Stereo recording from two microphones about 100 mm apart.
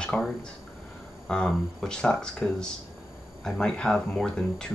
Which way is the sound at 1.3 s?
10° left (ahead or behind).